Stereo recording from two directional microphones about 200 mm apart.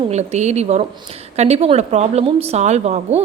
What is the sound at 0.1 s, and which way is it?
A woman's voice, 35° right (ahead or behind).